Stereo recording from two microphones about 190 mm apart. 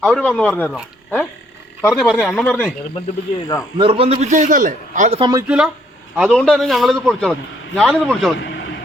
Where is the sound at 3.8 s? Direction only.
30° right (ahead or behind).